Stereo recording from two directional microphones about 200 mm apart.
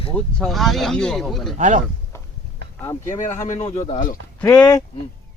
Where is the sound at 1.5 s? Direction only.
40° right (ahead or behind).